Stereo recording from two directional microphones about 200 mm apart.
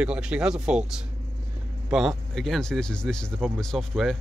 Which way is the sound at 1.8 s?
Centre (ahead or behind).